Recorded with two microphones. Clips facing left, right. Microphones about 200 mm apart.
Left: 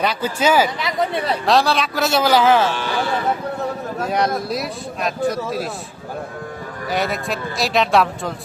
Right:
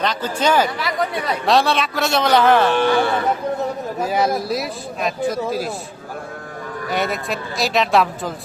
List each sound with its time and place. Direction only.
0.0 s speech: 10° left (ahead or behind)
0.8 s speech: 20° left (ahead or behind)
1.5 s speech: centre (ahead or behind)
2.6 s speech: 55° right (ahead or behind)
4.0 s speech: 5° right (ahead or behind)
6.8 s speech: centre (ahead or behind)